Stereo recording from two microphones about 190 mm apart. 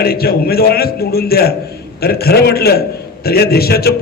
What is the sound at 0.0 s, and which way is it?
A man's voice, 55° left (ahead or behind).